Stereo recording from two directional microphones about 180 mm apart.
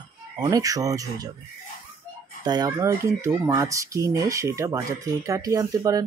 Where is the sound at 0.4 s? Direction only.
20° right (ahead or behind).